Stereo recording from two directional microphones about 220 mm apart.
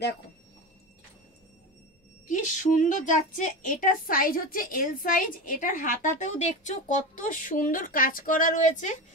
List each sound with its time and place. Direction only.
2.2 s a woman's voice: 35° left (ahead or behind)